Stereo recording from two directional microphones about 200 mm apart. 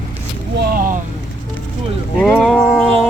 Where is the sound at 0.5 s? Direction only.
50° right (ahead or behind).